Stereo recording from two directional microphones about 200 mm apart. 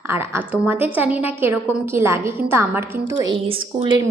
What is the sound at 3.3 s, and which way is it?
Speech, 25° right (ahead or behind).